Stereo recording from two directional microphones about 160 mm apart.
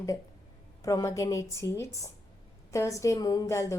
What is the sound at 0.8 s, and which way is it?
A woman's voice, 20° left (ahead or behind).